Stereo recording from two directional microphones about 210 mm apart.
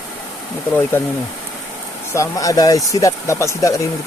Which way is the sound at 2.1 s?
15° left (ahead or behind).